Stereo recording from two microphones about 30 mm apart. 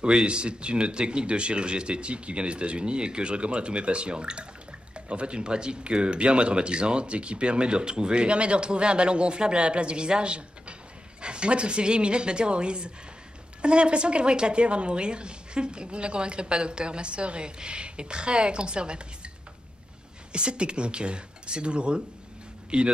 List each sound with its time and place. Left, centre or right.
0.0 s a woman's voice: right
20.3 s a woman's voice: right